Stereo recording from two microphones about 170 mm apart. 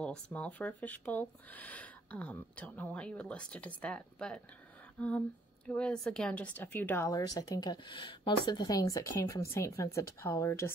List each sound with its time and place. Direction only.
0.0 s speech: 5° left (ahead or behind)
7.1 s speech: 20° left (ahead or behind)